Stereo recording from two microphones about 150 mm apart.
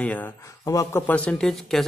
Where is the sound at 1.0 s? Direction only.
10° left (ahead or behind).